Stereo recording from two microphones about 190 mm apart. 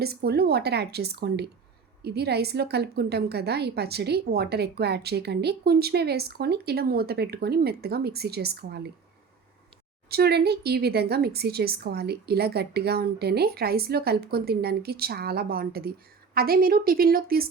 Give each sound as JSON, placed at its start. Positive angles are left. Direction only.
{"t": 0.0, "sound": "a woman's voice", "side_deg": -55}
{"t": 10.1, "sound": "a woman's voice", "side_deg": -55}